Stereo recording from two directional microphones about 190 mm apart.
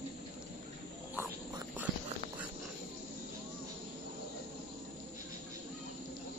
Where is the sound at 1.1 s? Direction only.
10° right (ahead or behind).